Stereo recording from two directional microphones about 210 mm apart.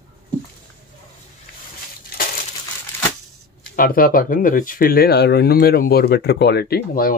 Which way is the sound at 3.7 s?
45° left (ahead or behind).